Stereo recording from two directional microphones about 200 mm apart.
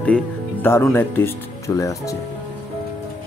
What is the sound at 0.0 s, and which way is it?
Speech, 10° left (ahead or behind).